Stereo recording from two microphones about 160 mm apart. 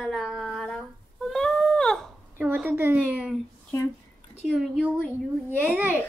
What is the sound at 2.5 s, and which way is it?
Speech, 10° right (ahead or behind).